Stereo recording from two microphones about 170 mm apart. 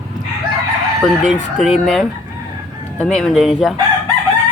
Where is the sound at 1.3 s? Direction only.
Centre (ahead or behind).